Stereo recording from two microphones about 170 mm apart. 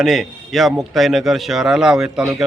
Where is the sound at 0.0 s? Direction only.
Centre (ahead or behind).